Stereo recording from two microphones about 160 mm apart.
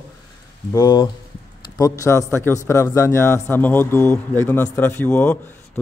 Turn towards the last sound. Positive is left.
turn(degrees=10)  # may be behind; listen again after turning